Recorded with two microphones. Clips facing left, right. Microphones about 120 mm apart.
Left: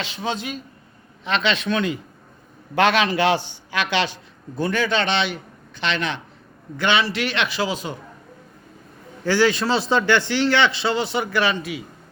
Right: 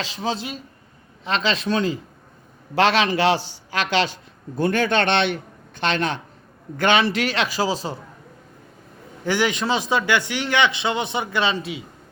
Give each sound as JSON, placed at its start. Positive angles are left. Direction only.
{"t": 0.0, "sound": "a man's voice", "side_deg": -35}
{"t": 9.2, "sound": "a man's voice", "side_deg": -15}